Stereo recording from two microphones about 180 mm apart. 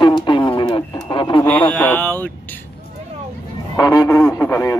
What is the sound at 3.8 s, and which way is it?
Radio, 20° left (ahead or behind).